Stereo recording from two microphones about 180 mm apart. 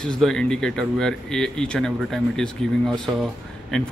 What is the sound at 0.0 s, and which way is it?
Speech, 5° left (ahead or behind).